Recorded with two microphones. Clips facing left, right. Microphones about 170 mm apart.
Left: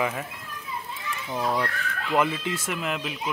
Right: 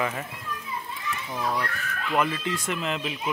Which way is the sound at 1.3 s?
20° left (ahead or behind).